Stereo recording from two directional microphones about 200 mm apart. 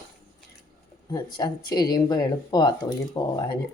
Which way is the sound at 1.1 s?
20° left (ahead or behind).